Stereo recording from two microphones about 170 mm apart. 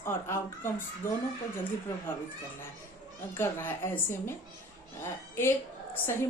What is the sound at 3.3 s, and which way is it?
A woman's voice, 15° left (ahead or behind).